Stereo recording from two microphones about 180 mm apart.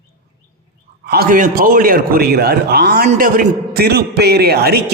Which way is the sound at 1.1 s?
55° right (ahead or behind).